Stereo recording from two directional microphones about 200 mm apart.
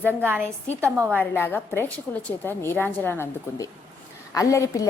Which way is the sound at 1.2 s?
10° left (ahead or behind).